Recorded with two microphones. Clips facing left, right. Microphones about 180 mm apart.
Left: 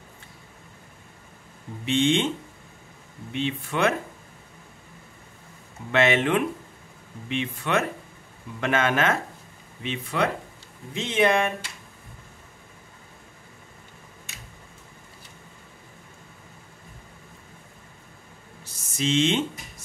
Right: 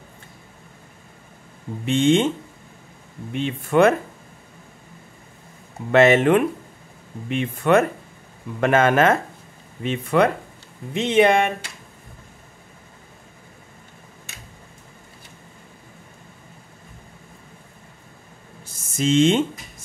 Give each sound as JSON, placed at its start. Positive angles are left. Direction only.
{"t": 1.9, "sound": "speech", "side_deg": -45}
{"t": 3.3, "sound": "speech", "side_deg": -45}
{"t": 5.9, "sound": "speech", "side_deg": -45}
{"t": 18.6, "sound": "a sound", "side_deg": -50}